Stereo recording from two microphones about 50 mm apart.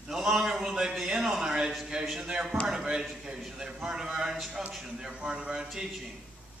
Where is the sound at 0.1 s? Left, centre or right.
Centre.